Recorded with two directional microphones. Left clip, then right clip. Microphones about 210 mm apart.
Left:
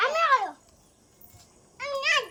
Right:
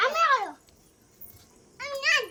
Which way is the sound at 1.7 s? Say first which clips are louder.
Even; 10° right (ahead or behind).